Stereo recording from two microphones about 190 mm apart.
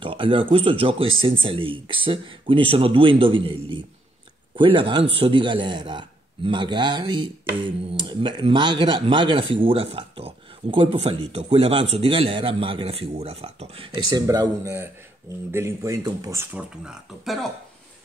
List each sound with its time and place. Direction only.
0.0 s a man's voice: 25° right (ahead or behind); by 17.5 s centre (ahead or behind)